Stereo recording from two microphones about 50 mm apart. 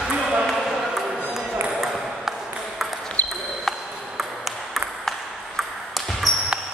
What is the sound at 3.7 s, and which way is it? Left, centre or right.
Ping, centre.